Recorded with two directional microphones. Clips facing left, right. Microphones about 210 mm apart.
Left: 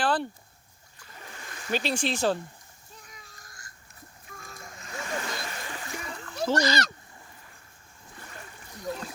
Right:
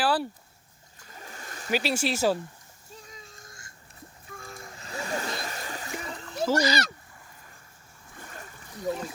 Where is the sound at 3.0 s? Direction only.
25° right (ahead or behind); by 5.8 s 40° right (ahead or behind).